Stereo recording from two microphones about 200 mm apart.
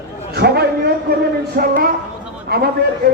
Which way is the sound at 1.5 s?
45° right (ahead or behind).